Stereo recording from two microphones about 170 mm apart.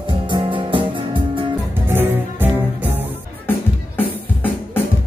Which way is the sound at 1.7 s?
15° right (ahead or behind).